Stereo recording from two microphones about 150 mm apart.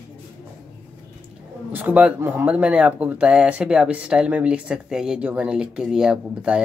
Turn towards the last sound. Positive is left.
turn(degrees=-5)  # may be behind; listen again after turning